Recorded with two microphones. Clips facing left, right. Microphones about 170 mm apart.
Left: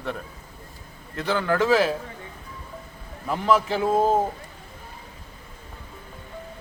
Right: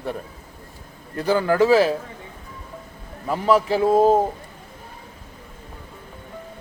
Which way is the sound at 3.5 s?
35° right (ahead or behind).